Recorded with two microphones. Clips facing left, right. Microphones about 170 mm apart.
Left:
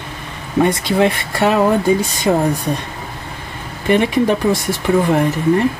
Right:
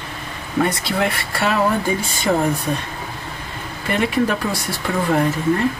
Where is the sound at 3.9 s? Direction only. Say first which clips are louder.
Left 5 dB; 20° left (ahead or behind).